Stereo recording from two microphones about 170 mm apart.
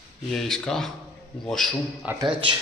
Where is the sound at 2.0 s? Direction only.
10° right (ahead or behind).